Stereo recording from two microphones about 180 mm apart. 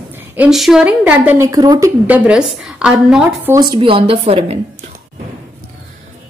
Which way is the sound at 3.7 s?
30° right (ahead or behind).